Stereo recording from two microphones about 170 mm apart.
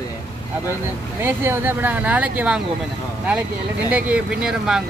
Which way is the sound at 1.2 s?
10° right (ahead or behind).